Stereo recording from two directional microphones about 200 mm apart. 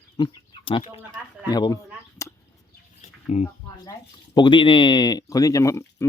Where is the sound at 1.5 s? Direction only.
20° left (ahead or behind).